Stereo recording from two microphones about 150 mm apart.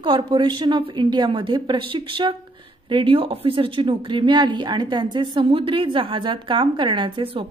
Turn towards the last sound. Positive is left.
turn(degrees=-35)  # may be behind; listen again after turning